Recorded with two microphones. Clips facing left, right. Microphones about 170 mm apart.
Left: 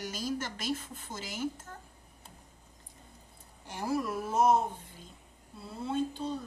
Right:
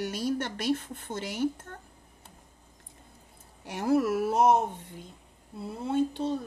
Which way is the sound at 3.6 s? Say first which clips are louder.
Right 7 dB; 65° right (ahead or behind).